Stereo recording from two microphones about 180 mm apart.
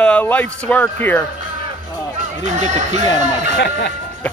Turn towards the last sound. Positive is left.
turn(degrees=65)  # may be behind; listen again after turning